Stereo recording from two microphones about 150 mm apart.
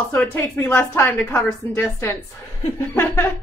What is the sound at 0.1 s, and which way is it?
A woman's voice, 15° left (ahead or behind).